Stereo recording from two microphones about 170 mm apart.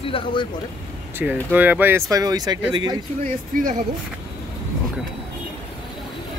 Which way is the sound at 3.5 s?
55° right (ahead or behind).